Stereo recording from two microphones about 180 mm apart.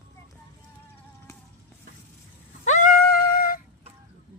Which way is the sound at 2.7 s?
45° left (ahead or behind).